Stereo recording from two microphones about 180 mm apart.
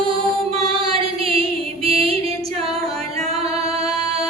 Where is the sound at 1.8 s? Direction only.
30° right (ahead or behind).